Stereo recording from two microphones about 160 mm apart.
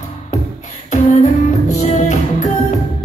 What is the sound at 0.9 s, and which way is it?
Music, 50° left (ahead or behind).